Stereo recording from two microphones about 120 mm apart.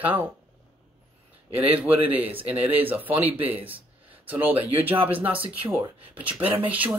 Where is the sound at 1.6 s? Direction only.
10° right (ahead or behind).